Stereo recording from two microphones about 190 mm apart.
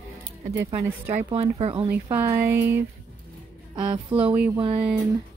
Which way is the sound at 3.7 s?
25° right (ahead or behind).